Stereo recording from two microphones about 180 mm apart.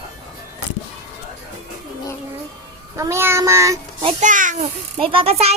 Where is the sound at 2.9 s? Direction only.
15° right (ahead or behind).